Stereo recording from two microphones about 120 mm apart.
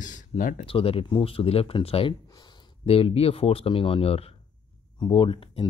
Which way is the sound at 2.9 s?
55° left (ahead or behind).